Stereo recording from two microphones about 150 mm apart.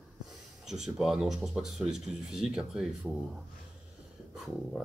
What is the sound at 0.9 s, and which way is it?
Speech, centre (ahead or behind).